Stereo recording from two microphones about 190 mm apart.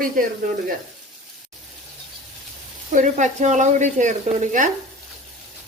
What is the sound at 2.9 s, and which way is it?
Speech, 40° right (ahead or behind).